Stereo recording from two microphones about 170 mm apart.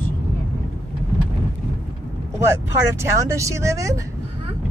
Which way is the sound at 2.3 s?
15° right (ahead or behind).